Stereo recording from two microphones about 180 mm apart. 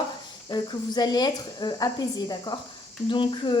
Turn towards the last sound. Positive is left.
turn(degrees=25)  # may be behind; listen again after turning